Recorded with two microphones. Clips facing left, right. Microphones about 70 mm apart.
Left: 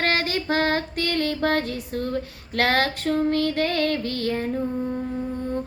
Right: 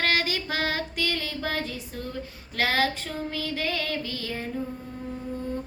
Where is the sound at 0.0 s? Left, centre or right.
Left.